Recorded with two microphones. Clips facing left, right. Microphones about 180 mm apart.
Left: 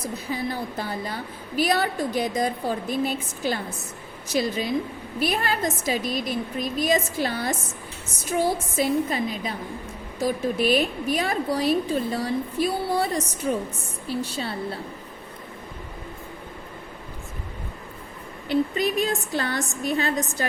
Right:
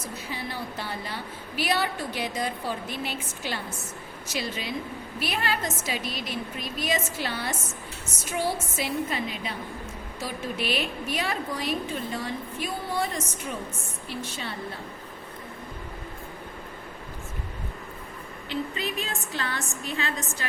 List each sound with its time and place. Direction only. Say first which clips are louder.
0.3 s a woman's voice: left 6 dB; 45° left (ahead or behind)
18.8 s a woman's voice: left 8 dB; 40° left (ahead or behind)